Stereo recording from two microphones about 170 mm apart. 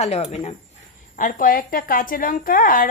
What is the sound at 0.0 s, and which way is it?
Speech, 40° left (ahead or behind).